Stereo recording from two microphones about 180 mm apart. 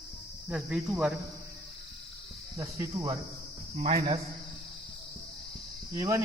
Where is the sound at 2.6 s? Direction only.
15° right (ahead or behind).